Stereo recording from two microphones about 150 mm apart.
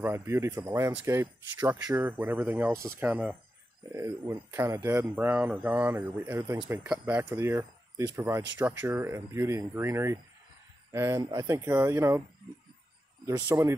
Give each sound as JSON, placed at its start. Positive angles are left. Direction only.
{"t": 0.0, "sound": "speech", "side_deg": -15}
{"t": 13.5, "sound": "speech", "side_deg": -15}